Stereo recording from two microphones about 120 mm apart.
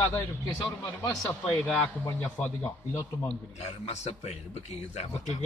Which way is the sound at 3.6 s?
65° left (ahead or behind).